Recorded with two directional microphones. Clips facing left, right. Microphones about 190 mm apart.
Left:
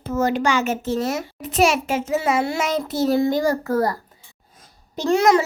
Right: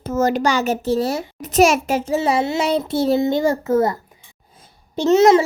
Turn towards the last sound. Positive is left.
turn(degrees=-25)  # may be behind; listen again after turning